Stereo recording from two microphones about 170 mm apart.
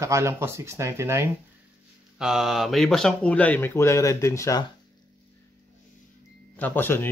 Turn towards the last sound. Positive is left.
turn(degrees=10)  # may be behind; listen again after turning